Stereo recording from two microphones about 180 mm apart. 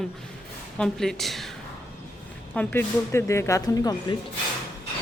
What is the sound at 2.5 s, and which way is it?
A woman's voice, 10° left (ahead or behind).